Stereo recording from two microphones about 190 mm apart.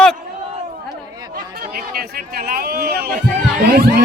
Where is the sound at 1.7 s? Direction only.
55° right (ahead or behind).